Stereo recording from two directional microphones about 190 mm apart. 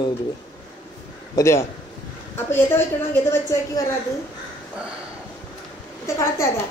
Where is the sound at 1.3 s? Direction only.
15° left (ahead or behind).